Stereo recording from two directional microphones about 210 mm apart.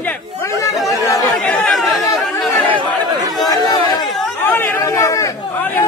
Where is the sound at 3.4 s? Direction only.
15° left (ahead or behind).